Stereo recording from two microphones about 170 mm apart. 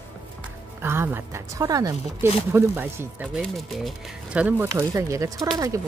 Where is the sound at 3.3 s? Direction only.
Centre (ahead or behind).